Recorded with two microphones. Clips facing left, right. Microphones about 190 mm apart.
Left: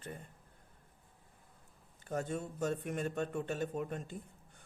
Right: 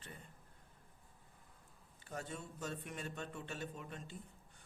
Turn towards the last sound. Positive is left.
turn(degrees=50)  # may be behind; listen again after turning